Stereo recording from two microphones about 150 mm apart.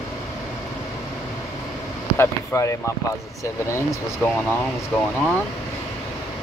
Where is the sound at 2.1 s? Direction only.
20° left (ahead or behind).